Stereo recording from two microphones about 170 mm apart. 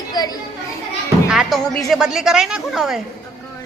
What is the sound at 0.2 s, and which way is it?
Speech, 25° left (ahead or behind).